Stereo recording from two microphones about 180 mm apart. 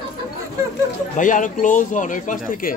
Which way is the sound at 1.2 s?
45° left (ahead or behind).